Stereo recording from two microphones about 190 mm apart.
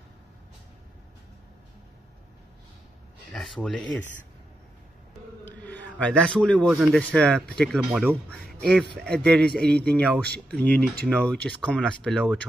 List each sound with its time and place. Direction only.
3.3 s speech: centre (ahead or behind)
5.4 s a sound: 10° left (ahead or behind)
6.7 s speech: 5° left (ahead or behind)